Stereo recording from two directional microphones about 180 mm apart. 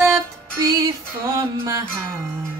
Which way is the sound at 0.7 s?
15° right (ahead or behind).